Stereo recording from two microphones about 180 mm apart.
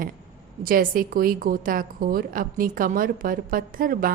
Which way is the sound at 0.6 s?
50° right (ahead or behind).